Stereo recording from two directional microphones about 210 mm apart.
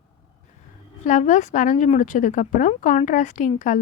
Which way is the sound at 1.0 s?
35° left (ahead or behind).